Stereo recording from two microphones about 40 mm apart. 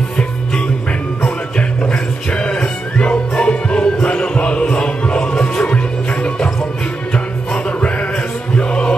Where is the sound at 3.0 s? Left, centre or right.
Left.